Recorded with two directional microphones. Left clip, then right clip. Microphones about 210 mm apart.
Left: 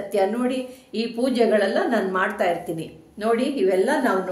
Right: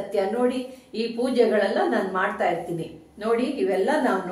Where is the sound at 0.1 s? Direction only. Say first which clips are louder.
Left 1 dB; 45° left (ahead or behind).